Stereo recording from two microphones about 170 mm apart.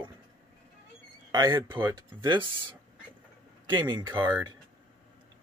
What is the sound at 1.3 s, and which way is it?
Speech, 25° right (ahead or behind).